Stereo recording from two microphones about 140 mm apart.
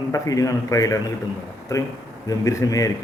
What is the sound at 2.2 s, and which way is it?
Speech, 25° left (ahead or behind).